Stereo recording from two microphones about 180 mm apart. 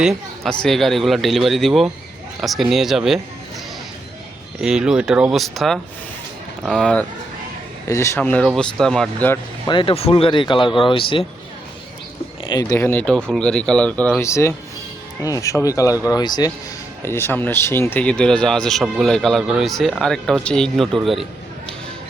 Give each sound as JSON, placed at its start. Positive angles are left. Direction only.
{"t": 0.0, "sound": "speech", "side_deg": 0}
{"t": 4.6, "sound": "speech", "side_deg": -5}
{"t": 7.9, "sound": "speech", "side_deg": 15}
{"t": 9.6, "sound": "speech", "side_deg": 30}
{"t": 12.5, "sound": "speech", "side_deg": 20}